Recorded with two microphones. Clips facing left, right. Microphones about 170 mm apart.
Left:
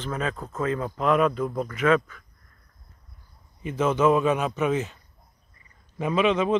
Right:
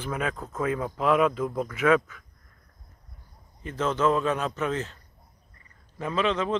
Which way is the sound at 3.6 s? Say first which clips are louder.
Left 3 dB; 15° left (ahead or behind).